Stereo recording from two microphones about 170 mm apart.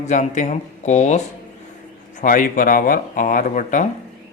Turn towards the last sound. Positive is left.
turn(degrees=50)  # may be behind; listen again after turning